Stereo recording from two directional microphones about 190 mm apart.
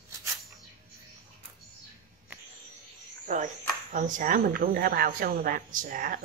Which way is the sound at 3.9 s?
45° right (ahead or behind).